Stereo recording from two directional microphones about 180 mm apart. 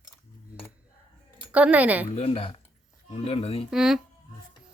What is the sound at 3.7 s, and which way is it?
Speech, 5° right (ahead or behind).